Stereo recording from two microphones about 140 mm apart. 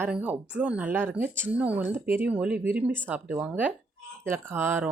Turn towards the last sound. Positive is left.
turn(degrees=-15)  # may be behind; listen again after turning